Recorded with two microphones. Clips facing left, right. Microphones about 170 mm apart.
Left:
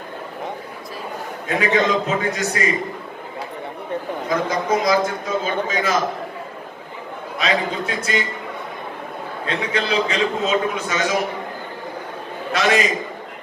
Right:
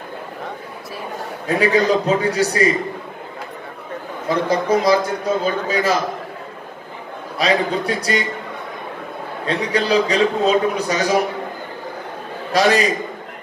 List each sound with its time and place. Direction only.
1.5 s a man's voice: 35° right (ahead or behind)
4.3 s a man's voice: 35° right (ahead or behind)
7.3 s a man's voice: 35° right (ahead or behind)
9.5 s a man's voice: 35° right (ahead or behind)
12.5 s a man's voice: 35° right (ahead or behind)